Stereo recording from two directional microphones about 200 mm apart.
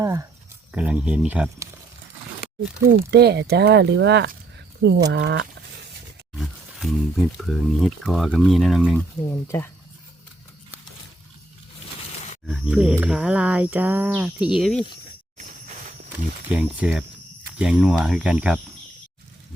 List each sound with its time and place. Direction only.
0.0 s a sound: 15° right (ahead or behind)
0.7 s speech: 5° right (ahead or behind)
3.1 s speech: 55° right (ahead or behind)
6.3 s speech: centre (ahead or behind)
9.3 s speech: 15° left (ahead or behind)
12.5 s speech: 5° right (ahead or behind)
16.1 s speech: 5° right (ahead or behind)